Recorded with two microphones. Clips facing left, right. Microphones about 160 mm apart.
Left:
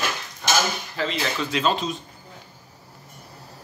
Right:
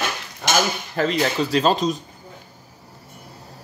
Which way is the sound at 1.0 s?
45° right (ahead or behind).